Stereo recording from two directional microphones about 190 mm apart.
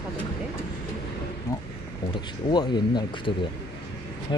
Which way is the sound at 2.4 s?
25° left (ahead or behind).